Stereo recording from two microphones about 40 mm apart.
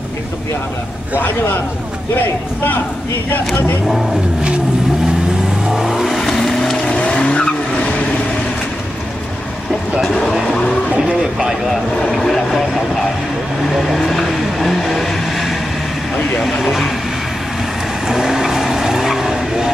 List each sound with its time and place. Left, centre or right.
5.7 s vehicle: centre
6.9 s vehicle: left
10.5 s vehicle: left
11.1 s speech: centre
12.1 s vehicle: centre
13.7 s vehicle: centre
16.4 s speech: centre
18.0 s vehicle: centre